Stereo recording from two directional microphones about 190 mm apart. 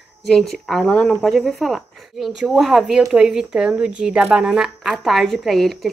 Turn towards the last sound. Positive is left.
turn(degrees=0)  # may be behind; listen again after turning